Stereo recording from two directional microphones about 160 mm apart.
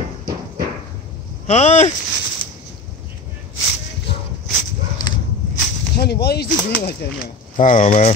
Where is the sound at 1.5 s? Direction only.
45° left (ahead or behind).